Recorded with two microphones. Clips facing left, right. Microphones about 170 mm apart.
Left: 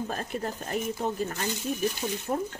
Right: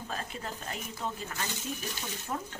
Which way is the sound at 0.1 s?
45° left (ahead or behind).